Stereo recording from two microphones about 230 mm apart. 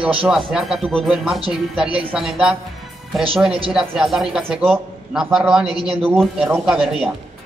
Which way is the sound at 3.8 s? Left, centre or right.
Centre.